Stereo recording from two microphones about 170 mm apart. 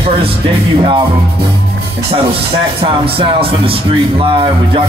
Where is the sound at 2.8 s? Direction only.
30° right (ahead or behind).